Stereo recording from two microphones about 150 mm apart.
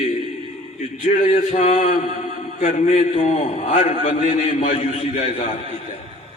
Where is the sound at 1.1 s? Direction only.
45° left (ahead or behind).